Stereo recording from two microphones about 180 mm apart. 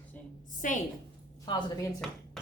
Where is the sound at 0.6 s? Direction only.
45° left (ahead or behind).